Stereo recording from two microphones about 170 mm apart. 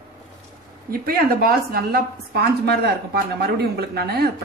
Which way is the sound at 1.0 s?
60° right (ahead or behind).